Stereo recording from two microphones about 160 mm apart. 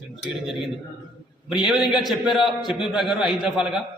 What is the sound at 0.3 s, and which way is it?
A man's voice, 5° right (ahead or behind).